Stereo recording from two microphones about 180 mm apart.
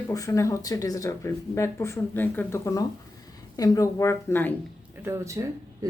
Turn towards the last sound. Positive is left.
turn(degrees=-15)  # may be behind; listen again after turning